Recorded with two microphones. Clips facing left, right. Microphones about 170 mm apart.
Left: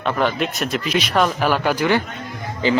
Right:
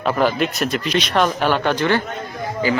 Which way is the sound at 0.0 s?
5° right (ahead or behind).